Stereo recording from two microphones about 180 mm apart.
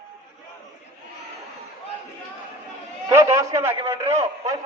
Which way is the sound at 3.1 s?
15° right (ahead or behind).